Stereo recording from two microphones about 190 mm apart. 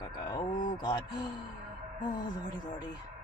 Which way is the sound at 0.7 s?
20° left (ahead or behind).